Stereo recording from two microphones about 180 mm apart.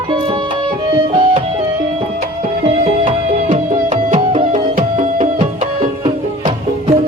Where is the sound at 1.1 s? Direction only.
25° right (ahead or behind).